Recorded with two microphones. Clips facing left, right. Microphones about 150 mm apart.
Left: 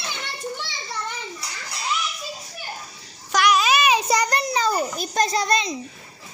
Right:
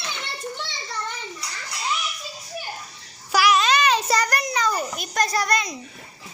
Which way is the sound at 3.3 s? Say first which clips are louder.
Even; centre (ahead or behind).